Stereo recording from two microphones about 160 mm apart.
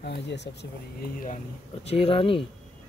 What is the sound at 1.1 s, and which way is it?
Speech, 60° left (ahead or behind).